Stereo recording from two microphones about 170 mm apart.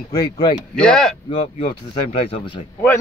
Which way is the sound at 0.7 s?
5° left (ahead or behind).